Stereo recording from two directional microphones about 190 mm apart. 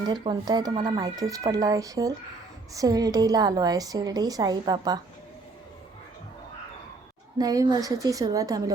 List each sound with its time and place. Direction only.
0.1 s a woman's voice: 20° right (ahead or behind)
7.3 s a woman's voice: 20° right (ahead or behind)